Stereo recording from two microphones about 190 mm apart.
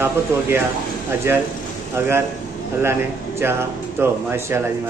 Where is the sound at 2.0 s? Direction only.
10° right (ahead or behind).